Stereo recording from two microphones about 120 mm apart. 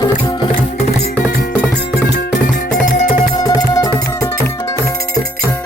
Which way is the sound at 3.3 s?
30° left (ahead or behind).